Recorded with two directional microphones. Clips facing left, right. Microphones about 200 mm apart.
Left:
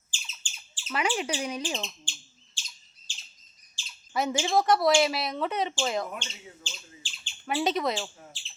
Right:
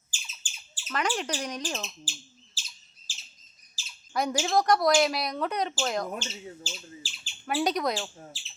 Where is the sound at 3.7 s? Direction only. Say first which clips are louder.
Even; centre (ahead or behind).